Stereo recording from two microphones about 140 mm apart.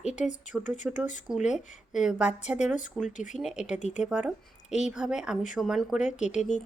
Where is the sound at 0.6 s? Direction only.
60° left (ahead or behind).